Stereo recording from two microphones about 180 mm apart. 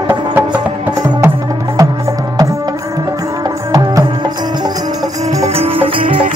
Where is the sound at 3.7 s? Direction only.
20° right (ahead or behind).